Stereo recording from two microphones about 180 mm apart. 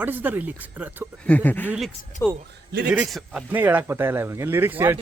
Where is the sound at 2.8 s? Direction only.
5° right (ahead or behind).